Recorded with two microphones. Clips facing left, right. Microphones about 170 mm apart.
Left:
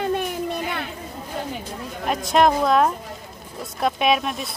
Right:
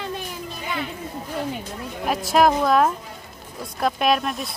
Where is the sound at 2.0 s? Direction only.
Centre (ahead or behind).